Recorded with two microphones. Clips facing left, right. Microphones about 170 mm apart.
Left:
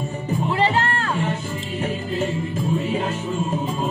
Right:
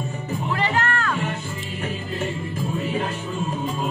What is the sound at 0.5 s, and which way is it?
Music, 30° left (ahead or behind).